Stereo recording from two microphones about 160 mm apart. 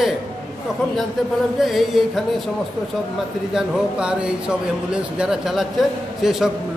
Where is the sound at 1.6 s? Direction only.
Centre (ahead or behind).